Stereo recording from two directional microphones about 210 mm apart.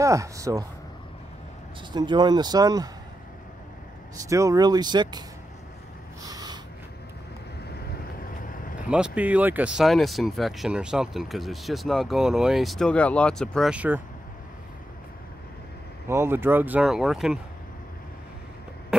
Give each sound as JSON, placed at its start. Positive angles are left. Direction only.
{"t": 0.0, "sound": "speech", "side_deg": -15}
{"t": 1.9, "sound": "speech", "side_deg": -20}
{"t": 4.3, "sound": "speech", "side_deg": -15}
{"t": 6.2, "sound": "snort", "side_deg": -20}
{"t": 8.2, "sound": "vehicle", "side_deg": 40}
{"t": 8.8, "sound": "speech", "side_deg": -5}
{"t": 16.1, "sound": "speech", "side_deg": -10}